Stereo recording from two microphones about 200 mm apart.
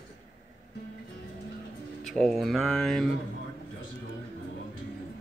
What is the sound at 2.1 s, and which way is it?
Speech, centre (ahead or behind).